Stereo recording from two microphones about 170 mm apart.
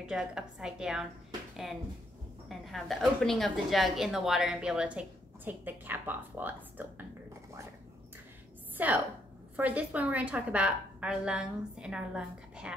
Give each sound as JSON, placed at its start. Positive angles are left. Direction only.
{"t": 0.0, "sound": "a woman's voice", "side_deg": -5}
{"t": 2.4, "sound": "a woman's voice", "side_deg": 0}
{"t": 8.7, "sound": "a woman's voice", "side_deg": -10}